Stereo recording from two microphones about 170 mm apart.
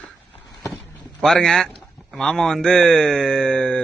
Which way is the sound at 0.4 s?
20° left (ahead or behind).